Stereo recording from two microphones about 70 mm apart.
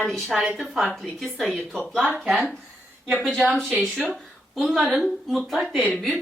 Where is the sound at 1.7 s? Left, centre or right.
Centre.